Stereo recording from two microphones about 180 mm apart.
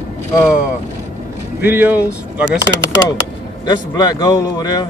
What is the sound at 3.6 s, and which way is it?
A man's voice, 25° left (ahead or behind).